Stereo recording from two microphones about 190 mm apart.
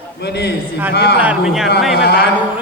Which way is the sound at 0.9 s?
55° left (ahead or behind).